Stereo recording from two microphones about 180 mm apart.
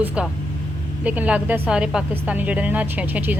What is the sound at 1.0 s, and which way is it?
A woman's voice, 10° right (ahead or behind).